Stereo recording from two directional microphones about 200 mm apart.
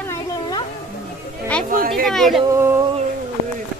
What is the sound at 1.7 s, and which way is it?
Speech, 45° right (ahead or behind).